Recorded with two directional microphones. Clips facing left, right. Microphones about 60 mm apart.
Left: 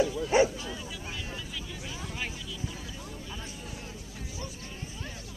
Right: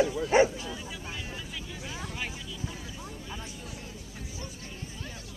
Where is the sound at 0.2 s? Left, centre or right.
Right.